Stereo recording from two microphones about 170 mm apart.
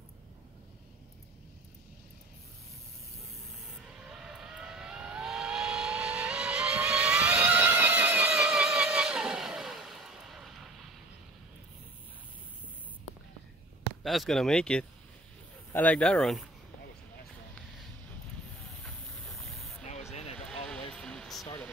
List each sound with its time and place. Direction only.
4.1 s vehicle: centre (ahead or behind)
14.0 s speech: centre (ahead or behind)
18.8 s hiss: 5° left (ahead or behind)
19.8 s a sound: 40° left (ahead or behind)
20.3 s vehicle: 5° left (ahead or behind)
20.9 s a sound: 5° left (ahead or behind)